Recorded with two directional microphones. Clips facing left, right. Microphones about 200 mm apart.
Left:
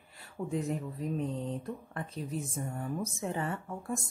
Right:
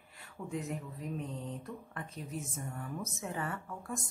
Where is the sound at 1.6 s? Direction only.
30° left (ahead or behind).